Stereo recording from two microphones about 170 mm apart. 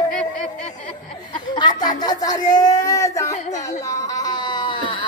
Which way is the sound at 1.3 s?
25° left (ahead or behind).